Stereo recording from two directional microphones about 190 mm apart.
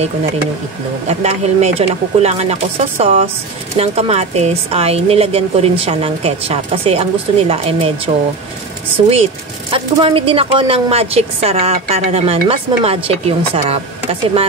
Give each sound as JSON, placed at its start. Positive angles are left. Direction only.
{"t": 1.0, "sound": "a woman's voice", "side_deg": -35}
{"t": 9.1, "sound": "a woman's voice", "side_deg": -30}